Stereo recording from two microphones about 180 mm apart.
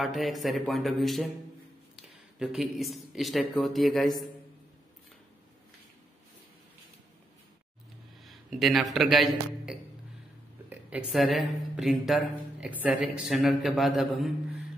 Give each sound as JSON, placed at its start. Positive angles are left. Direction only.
{"t": 0.0, "sound": "a woman's voice", "side_deg": 0}
{"t": 8.3, "sound": "a man's voice", "side_deg": 0}